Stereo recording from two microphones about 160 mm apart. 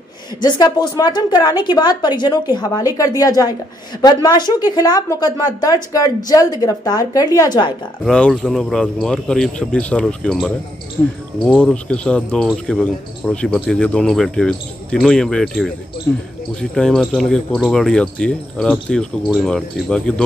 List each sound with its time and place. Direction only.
0.4 s a woman's voice: 25° left (ahead or behind)
8.0 s speech: 5° left (ahead or behind)
11.4 s speech: 5° left (ahead or behind)
16.1 s speech: 15° left (ahead or behind)